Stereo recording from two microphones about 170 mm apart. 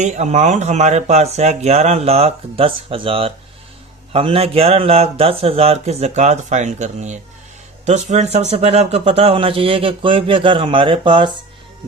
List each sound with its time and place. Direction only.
0.0 s speech: 45° right (ahead or behind)